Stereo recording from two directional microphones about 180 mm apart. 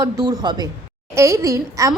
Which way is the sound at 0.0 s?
20° right (ahead or behind).